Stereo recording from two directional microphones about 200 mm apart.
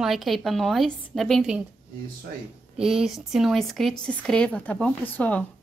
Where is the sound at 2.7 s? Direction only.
Centre (ahead or behind).